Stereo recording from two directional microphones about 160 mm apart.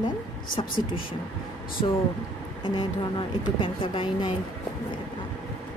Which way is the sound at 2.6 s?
30° left (ahead or behind).